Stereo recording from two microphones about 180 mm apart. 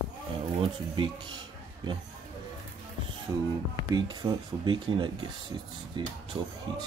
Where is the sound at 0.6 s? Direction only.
25° right (ahead or behind).